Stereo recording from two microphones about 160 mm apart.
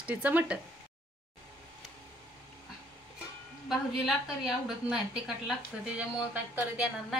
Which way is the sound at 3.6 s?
Centre (ahead or behind).